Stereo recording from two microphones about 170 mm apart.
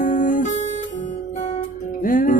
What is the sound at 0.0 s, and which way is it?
Guitar, 50° left (ahead or behind).